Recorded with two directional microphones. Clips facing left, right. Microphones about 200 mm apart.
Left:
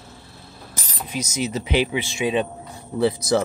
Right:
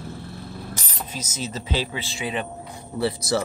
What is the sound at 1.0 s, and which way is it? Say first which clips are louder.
Speech: left 7 dB; 15° left (ahead or behind).